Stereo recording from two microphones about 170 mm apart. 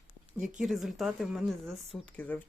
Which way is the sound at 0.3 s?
50° right (ahead or behind).